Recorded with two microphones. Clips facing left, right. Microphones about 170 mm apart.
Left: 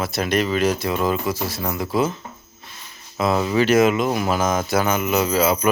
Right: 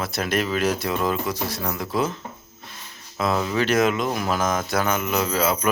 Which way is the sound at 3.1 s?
5° left (ahead or behind).